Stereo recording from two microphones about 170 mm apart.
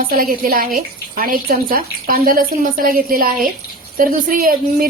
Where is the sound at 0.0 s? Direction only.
55° right (ahead or behind).